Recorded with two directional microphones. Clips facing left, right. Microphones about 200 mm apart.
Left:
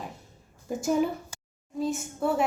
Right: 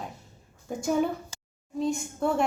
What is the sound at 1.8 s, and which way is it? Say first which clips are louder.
Speech: right 1 dB; 5° left (ahead or behind).